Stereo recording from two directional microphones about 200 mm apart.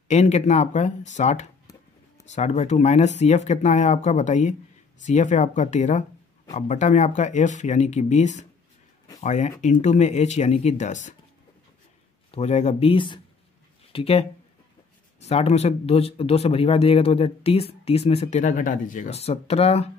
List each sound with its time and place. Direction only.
0.1 s speech: 35° left (ahead or behind)
12.3 s speech: 30° left (ahead or behind)
15.2 s speech: 30° left (ahead or behind)